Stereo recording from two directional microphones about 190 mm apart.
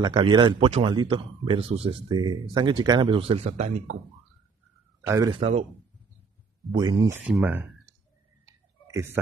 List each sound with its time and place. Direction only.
0.0 s speech: 25° right (ahead or behind)
5.0 s speech: 20° right (ahead or behind)
5.4 s speech: 35° right (ahead or behind)
6.7 s speech: 20° right (ahead or behind)
7.2 s speech: 5° right (ahead or behind)
8.5 s a sound: 15° right (ahead or behind)